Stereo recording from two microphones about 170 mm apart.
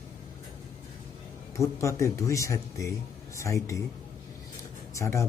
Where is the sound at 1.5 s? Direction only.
20° left (ahead or behind).